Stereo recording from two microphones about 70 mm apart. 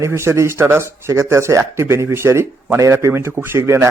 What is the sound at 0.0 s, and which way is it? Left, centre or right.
Speech, right.